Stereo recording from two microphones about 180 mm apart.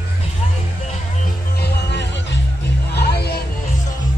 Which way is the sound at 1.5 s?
65° left (ahead or behind).